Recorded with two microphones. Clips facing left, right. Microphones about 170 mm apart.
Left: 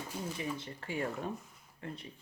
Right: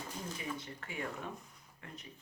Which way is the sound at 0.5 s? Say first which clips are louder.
Left 5 dB; 30° left (ahead or behind).